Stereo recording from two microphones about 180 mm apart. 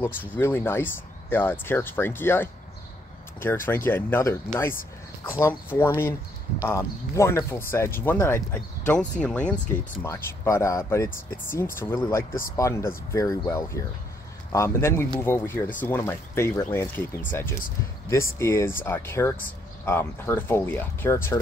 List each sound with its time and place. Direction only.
0.0 s speech: 10° left (ahead or behind)